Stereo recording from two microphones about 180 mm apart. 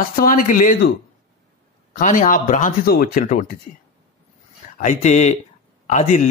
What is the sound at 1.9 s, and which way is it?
Speech, 45° left (ahead or behind).